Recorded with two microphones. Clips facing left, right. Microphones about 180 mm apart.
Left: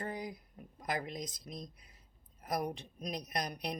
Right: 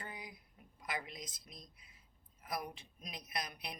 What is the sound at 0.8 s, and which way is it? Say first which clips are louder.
Speech: left 6 dB; 40° left (ahead or behind).